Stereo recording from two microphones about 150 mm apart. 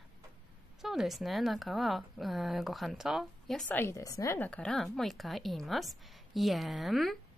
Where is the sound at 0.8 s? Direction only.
Centre (ahead or behind).